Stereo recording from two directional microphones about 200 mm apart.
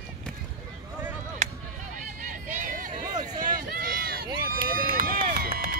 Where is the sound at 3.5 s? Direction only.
45° right (ahead or behind).